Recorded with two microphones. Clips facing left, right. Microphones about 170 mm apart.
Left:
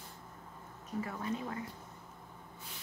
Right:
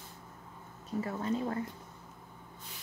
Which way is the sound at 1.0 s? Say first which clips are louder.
Right 7 dB; 35° right (ahead or behind).